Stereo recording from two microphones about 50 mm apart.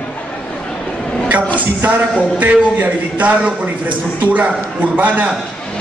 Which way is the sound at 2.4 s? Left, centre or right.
Right.